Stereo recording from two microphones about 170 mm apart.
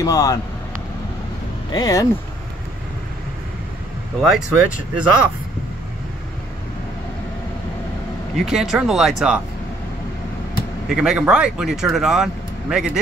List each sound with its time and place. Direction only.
0.0 s speech: 20° left (ahead or behind)
1.7 s speech: 20° left (ahead or behind)
4.2 s speech: centre (ahead or behind)
8.5 s speech: centre (ahead or behind)
10.9 s speech: 5° right (ahead or behind)